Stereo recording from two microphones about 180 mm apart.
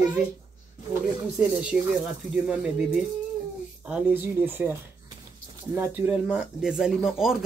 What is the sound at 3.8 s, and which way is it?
Speech, 10° right (ahead or behind).